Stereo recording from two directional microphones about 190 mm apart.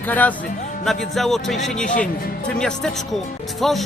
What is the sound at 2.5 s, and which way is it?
Speech, 5° left (ahead or behind).